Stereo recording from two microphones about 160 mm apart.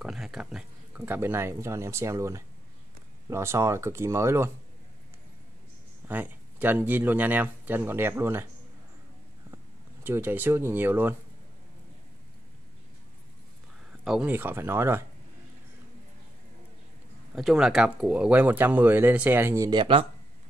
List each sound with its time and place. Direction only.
0.0 s speech: centre (ahead or behind)
6.0 s speech: 10° right (ahead or behind)
10.0 s speech: 10° right (ahead or behind)
14.0 s speech: 5° right (ahead or behind)
17.4 s speech: centre (ahead or behind); by 19.8 s 20° right (ahead or behind)
19.8 s speech: 35° right (ahead or behind)